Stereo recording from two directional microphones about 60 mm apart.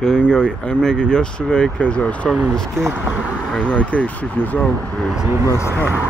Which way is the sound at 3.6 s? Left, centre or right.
Left.